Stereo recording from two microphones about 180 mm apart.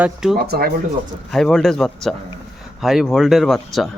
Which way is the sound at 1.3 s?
Centre (ahead or behind).